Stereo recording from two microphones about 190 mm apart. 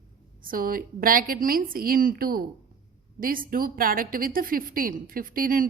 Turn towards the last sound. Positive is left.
turn(degrees=-45)  # may be behind; listen again after turning